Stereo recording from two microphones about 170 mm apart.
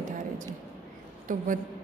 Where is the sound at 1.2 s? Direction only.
50° right (ahead or behind).